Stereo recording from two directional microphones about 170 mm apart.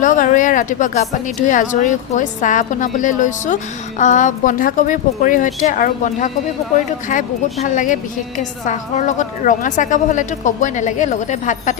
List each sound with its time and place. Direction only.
0.0 s a woman's voice: 50° left (ahead or behind)